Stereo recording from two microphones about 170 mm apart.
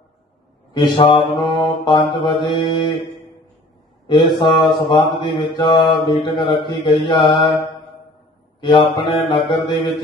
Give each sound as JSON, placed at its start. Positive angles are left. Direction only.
{"t": 0.7, "sound": "mantra", "side_deg": 30}
{"t": 8.5, "sound": "mantra", "side_deg": 30}